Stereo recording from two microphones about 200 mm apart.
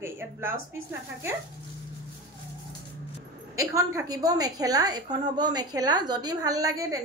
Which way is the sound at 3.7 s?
20° right (ahead or behind).